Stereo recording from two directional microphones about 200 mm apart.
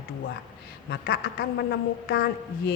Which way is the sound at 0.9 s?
50° left (ahead or behind).